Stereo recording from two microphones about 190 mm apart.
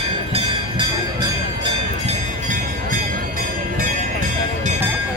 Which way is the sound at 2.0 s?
45° right (ahead or behind).